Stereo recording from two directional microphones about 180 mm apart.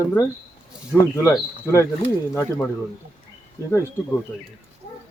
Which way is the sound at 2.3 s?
10° left (ahead or behind).